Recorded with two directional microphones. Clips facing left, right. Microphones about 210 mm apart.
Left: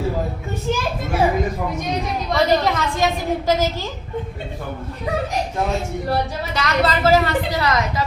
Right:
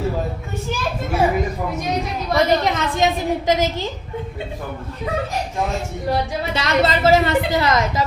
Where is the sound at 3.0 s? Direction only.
20° right (ahead or behind).